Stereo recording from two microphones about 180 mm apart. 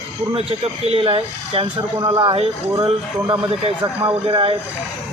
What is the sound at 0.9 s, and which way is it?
Speech, 30° right (ahead or behind).